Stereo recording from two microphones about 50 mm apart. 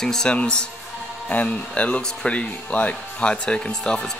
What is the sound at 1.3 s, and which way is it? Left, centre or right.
Speech, left.